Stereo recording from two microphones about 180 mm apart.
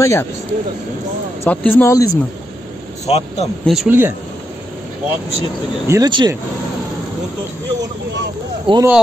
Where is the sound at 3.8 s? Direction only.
10° right (ahead or behind).